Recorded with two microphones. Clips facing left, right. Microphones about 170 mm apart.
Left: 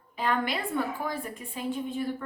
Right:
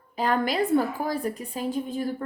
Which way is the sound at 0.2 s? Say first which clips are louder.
Right 5 dB; 40° right (ahead or behind).